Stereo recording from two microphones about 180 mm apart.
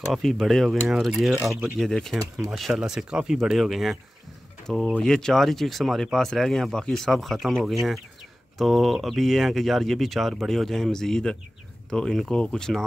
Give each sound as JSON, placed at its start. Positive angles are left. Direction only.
{"t": 0.1, "sound": "speech", "side_deg": 0}